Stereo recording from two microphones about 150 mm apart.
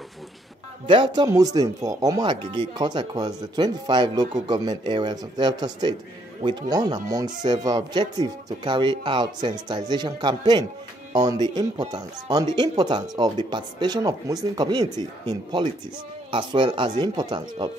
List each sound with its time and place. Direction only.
0.8 s speech: 35° right (ahead or behind)